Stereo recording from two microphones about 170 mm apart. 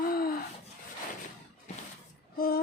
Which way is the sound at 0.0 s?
60° left (ahead or behind).